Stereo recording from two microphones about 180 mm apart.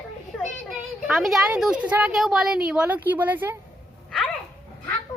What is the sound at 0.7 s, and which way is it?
A woman's voice, centre (ahead or behind).